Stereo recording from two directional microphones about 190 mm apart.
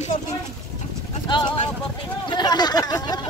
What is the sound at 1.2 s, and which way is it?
Speech, 25° left (ahead or behind).